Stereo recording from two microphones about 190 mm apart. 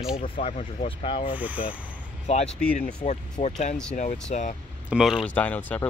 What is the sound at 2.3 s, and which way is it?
Speech, 35° left (ahead or behind).